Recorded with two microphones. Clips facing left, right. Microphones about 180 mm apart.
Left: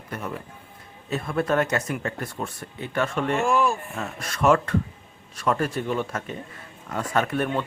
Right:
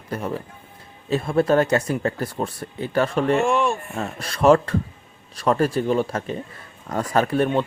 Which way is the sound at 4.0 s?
30° right (ahead or behind).